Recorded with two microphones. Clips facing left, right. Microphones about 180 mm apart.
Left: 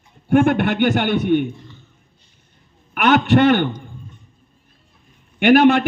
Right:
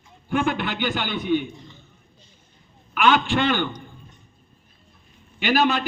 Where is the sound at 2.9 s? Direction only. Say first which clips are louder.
Left 5 dB; 65° left (ahead or behind).